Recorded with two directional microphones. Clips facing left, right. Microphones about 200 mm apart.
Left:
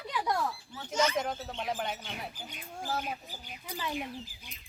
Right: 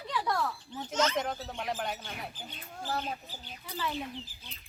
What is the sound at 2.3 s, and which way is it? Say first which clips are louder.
Speech: left 1 dB; 15° left (ahead or behind).